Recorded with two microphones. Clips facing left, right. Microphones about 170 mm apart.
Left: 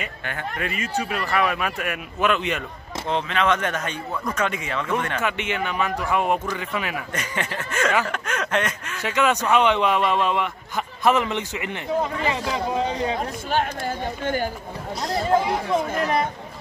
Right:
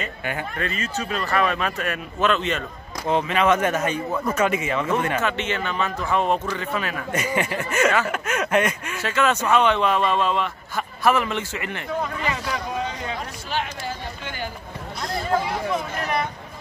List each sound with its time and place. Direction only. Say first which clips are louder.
0.2 s speech: right 5 dB; 10° right (ahead or behind)
0.6 s speech: left 1 dB; 15° left (ahead or behind)
3.1 s speech: right 3 dB; 5° right (ahead or behind)
5.2 s speech: even; 15° left (ahead or behind)
7.1 s speech: right 5 dB; 10° right (ahead or behind)
9.0 s speech: even; 15° left (ahead or behind)
13.5 s speech: left 4 dB; 50° left (ahead or behind)